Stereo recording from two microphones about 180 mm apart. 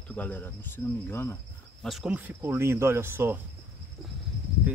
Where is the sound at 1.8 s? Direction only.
Centre (ahead or behind).